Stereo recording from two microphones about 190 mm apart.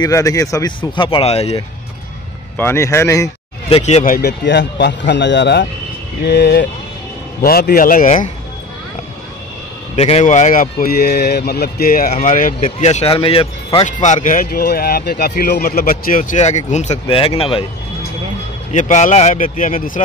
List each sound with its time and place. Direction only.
0.0 s a man's voice: 20° left (ahead or behind)
0.9 s speech: 25° left (ahead or behind)
2.5 s a man's voice: 10° left (ahead or behind)
3.6 s speech: 35° left (ahead or behind)
4.1 s speech: 60° left (ahead or behind); by 8.3 s 45° left (ahead or behind)
9.9 s speech: 35° left (ahead or behind)
14.0 s speech: 40° left (ahead or behind)
18.7 s speech: 40° left (ahead or behind)